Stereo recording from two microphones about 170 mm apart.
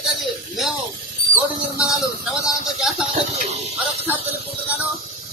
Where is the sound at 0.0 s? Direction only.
Centre (ahead or behind).